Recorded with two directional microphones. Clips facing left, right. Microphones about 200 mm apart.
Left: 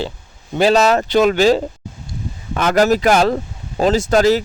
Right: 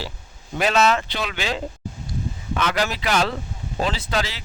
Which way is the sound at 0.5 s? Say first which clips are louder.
Left 6 dB; 35° left (ahead or behind).